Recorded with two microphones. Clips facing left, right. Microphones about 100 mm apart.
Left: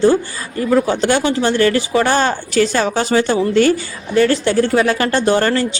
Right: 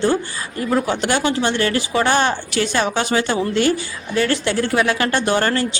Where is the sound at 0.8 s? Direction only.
30° left (ahead or behind).